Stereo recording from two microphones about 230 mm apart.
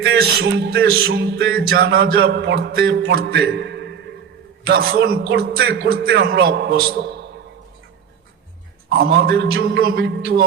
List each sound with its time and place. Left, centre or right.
0.0 s music: right
8.9 s music: right